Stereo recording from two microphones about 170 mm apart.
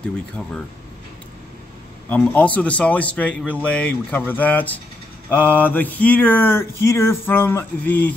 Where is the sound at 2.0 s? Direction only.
10° left (ahead or behind).